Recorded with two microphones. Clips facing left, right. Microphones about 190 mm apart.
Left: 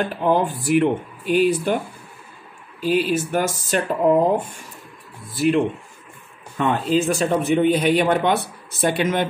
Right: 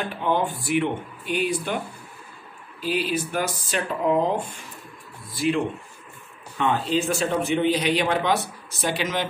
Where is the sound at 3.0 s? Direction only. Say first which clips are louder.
Left 5 dB; 45° left (ahead or behind).